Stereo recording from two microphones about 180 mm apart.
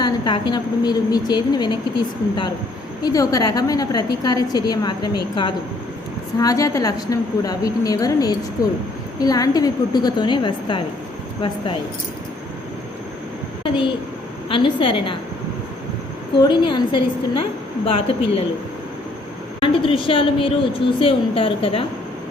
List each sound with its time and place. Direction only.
0.0 s a woman's voice: 25° left (ahead or behind)
14.5 s a woman's voice: 30° left (ahead or behind)
16.4 s a woman's voice: 25° left (ahead or behind)
19.5 s a woman's voice: 30° left (ahead or behind)